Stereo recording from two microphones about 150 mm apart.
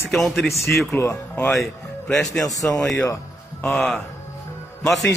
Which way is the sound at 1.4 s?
Centre (ahead or behind).